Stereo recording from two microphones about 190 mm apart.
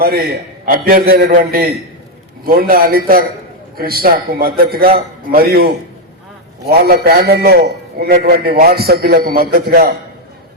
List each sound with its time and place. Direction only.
0.0 s a man's voice: 55° right (ahead or behind)
6.7 s a man's voice: 55° right (ahead or behind)